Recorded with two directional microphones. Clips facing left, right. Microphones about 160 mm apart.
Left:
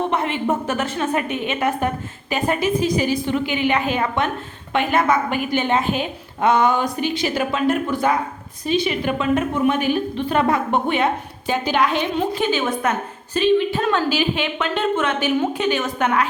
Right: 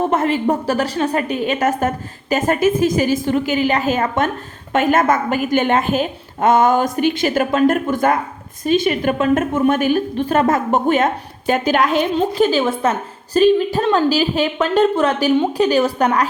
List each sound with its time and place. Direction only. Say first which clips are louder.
0.0 s a woman's voice: right 5 dB; 40° right (ahead or behind)